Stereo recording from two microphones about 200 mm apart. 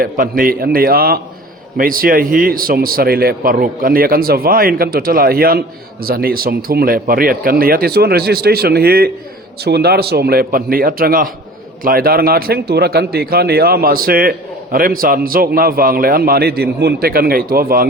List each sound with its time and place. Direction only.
0.0 s speech: 45° right (ahead or behind)